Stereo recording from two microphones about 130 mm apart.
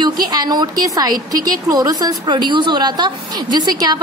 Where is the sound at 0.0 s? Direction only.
30° right (ahead or behind).